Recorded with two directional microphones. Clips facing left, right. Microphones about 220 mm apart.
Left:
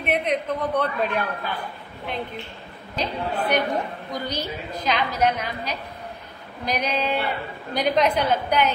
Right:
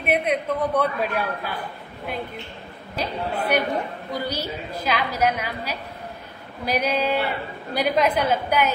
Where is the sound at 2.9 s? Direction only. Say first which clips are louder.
Even; 10° right (ahead or behind).